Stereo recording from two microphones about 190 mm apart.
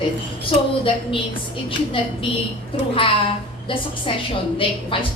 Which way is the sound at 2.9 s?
25° left (ahead or behind).